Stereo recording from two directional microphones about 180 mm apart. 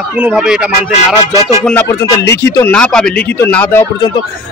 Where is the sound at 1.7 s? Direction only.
15° left (ahead or behind).